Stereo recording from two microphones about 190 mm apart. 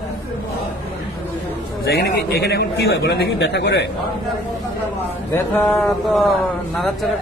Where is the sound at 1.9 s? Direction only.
55° left (ahead or behind).